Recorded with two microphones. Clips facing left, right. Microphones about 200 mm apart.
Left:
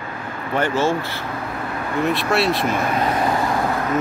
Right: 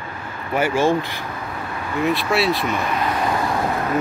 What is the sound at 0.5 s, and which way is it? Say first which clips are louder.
Speech: right 2 dB; 10° right (ahead or behind).